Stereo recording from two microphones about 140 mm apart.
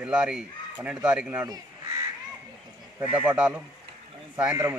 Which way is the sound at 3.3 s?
10° right (ahead or behind).